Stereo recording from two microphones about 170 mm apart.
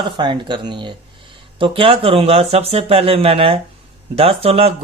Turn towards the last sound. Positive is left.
turn(degrees=-35)  # may be behind; listen again after turning